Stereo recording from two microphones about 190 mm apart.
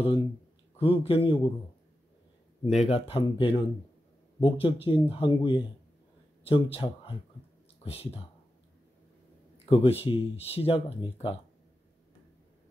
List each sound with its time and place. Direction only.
0.7 s a man's voice: 30° left (ahead or behind)
2.6 s a man's voice: 35° left (ahead or behind)
9.7 s speech: 30° left (ahead or behind)